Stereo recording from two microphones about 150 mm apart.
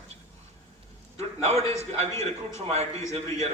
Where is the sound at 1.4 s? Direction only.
45° right (ahead or behind).